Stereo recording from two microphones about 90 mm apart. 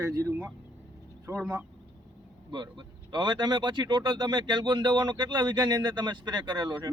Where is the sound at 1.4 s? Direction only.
10° right (ahead or behind).